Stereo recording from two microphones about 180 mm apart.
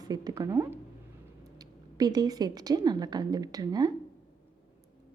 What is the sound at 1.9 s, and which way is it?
A woman's voice, 20° right (ahead or behind).